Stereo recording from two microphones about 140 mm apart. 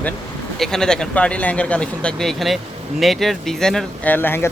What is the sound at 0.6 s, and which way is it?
Speech, 5° left (ahead or behind).